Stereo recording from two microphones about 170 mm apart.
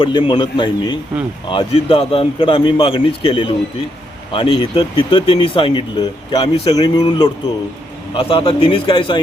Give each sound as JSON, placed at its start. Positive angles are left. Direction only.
{"t": 0.0, "sound": "a man's voice", "side_deg": 30}